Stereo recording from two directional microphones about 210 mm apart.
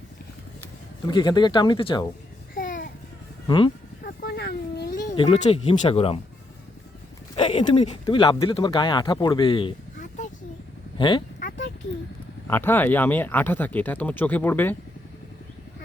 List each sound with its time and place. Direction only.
1.0 s speech: 20° left (ahead or behind)
2.6 s babbling: 40° left (ahead or behind)
3.4 s speech: 20° left (ahead or behind)
4.0 s a sound: 50° left (ahead or behind)
5.1 s speech: 25° left (ahead or behind)
7.3 s speech: 25° left (ahead or behind)
10.9 s speech: 25° left (ahead or behind)
11.3 s a sound: 50° left (ahead or behind)
12.5 s speech: 10° left (ahead or behind)